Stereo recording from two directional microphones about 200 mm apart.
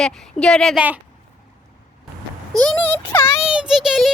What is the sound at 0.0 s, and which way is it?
Speech, 5° left (ahead or behind).